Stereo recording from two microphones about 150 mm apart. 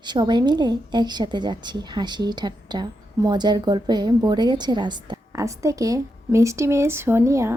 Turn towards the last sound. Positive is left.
turn(degrees=-20)  # may be behind; listen again after turning